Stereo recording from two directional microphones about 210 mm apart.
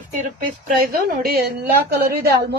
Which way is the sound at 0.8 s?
45° right (ahead or behind).